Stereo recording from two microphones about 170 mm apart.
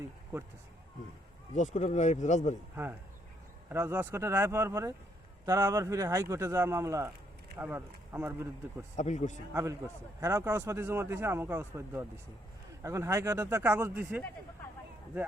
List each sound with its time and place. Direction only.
1.5 s speech: 45° left (ahead or behind)
3.7 s a man's voice: 15° right (ahead or behind)
9.0 s speech: 45° left (ahead or behind)
9.5 s a man's voice: 15° right (ahead or behind)